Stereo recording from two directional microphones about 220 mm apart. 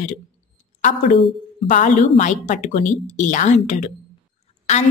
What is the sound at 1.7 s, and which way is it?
A woman's voice, 35° left (ahead or behind).